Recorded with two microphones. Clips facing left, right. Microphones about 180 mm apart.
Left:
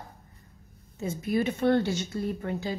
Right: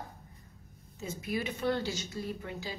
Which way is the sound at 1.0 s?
50° left (ahead or behind).